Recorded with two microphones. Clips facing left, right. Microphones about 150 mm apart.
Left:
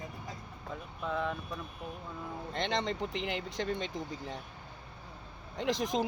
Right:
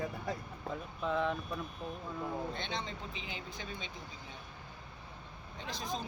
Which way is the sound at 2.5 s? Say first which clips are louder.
Left 8 dB; 90° left.